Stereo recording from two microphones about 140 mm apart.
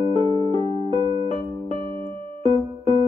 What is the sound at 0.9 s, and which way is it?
Keyboard, 35° right (ahead or behind).